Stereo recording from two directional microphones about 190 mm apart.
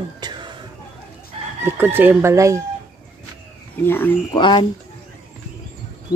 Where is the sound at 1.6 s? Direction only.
10° right (ahead or behind).